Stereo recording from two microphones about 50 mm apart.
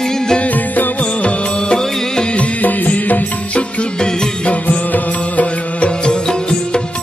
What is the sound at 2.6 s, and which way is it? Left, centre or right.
Music, left.